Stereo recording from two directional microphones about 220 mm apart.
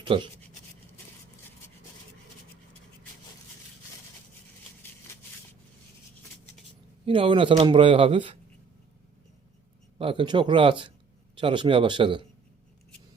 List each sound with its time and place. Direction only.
0.0 s speech: 25° right (ahead or behind)
5.1 s a sound: 10° left (ahead or behind)
7.0 s speech: 25° right (ahead or behind)
10.0 s speech: 25° right (ahead or behind)